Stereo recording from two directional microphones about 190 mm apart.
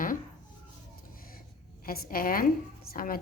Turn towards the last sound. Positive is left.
turn(degrees=50)  # may be behind; listen again after turning